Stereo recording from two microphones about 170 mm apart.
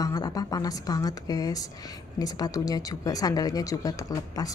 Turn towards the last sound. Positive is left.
turn(degrees=20)  # may be behind; listen again after turning